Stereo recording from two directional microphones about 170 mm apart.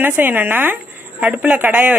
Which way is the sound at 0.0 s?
10° right (ahead or behind).